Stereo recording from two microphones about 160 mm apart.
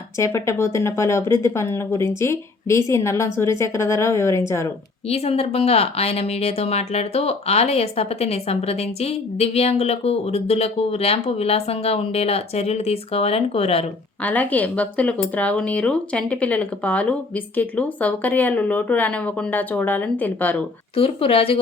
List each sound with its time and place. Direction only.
0.2 s speech: 20° left (ahead or behind)
5.0 s speech: 40° left (ahead or behind)
14.2 s speech: 10° left (ahead or behind)
20.9 s speech: 35° left (ahead or behind)